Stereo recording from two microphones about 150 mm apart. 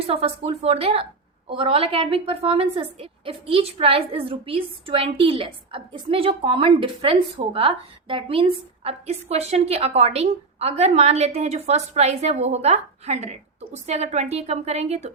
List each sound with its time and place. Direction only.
0.1 s a woman's voice: 40° right (ahead or behind)